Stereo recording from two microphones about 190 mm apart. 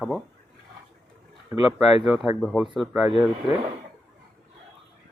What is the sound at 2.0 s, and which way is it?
Speech, 5° right (ahead or behind).